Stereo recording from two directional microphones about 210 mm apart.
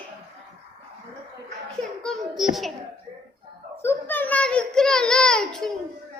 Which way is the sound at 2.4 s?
Centre (ahead or behind).